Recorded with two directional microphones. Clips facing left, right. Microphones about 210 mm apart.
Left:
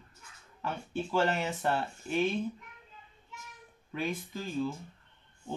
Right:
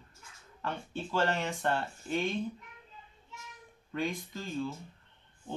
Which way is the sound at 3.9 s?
5° left (ahead or behind).